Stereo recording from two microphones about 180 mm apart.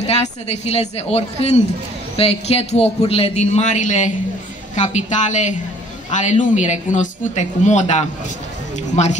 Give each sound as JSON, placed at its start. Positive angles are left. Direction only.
{"t": 0.0, "sound": "a woman's voice", "side_deg": 35}